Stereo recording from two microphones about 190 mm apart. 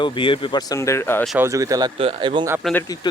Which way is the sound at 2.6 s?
5° left (ahead or behind).